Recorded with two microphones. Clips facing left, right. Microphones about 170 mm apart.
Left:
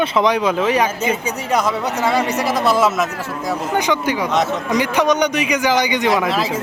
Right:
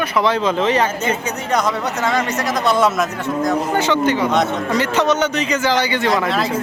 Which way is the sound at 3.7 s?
15° left (ahead or behind).